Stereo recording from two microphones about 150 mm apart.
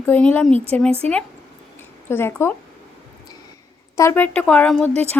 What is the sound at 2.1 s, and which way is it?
Speech, 15° left (ahead or behind).